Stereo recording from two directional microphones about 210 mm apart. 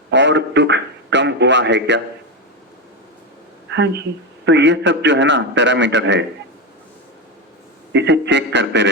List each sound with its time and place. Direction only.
0.1 s a man's voice: 55° right (ahead or behind)
3.7 s a man's voice: 55° right (ahead or behind)
7.9 s a man's voice: 55° right (ahead or behind)